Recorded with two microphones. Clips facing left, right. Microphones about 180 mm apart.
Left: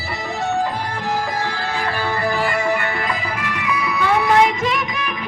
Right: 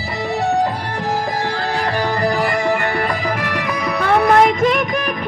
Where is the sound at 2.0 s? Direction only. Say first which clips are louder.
Right 3 dB; 40° right (ahead or behind).